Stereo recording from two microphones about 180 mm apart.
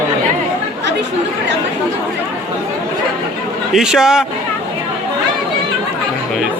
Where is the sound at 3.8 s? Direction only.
5° right (ahead or behind).